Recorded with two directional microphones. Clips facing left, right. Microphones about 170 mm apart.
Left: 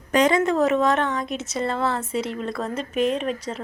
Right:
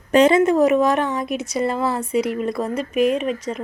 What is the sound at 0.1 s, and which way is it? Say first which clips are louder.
Speech: right 5 dB; 25° right (ahead or behind).